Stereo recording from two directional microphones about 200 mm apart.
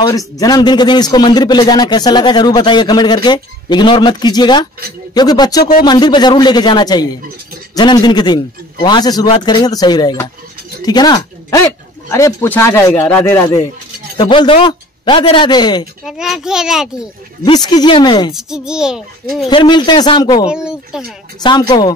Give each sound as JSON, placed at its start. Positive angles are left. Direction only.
{"t": 0.4, "sound": "a man's voice", "side_deg": 20}
{"t": 16.1, "sound": "a child's voice", "side_deg": 0}
{"t": 17.5, "sound": "a man's voice", "side_deg": 20}
{"t": 18.3, "sound": "a child's voice", "side_deg": -5}
{"t": 19.5, "sound": "a man's voice", "side_deg": 25}
{"t": 20.4, "sound": "a child's voice", "side_deg": -5}
{"t": 21.4, "sound": "a man's voice", "side_deg": 20}